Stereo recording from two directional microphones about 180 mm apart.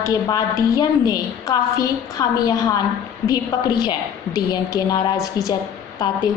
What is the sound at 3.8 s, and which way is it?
A woman's voice, 20° left (ahead or behind).